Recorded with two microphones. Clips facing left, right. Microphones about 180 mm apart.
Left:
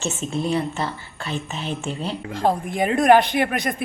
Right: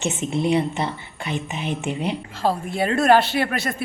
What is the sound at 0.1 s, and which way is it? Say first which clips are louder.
Speech: right 3 dB; 15° right (ahead or behind).